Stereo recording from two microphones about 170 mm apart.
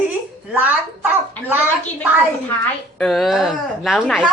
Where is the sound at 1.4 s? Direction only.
10° left (ahead or behind).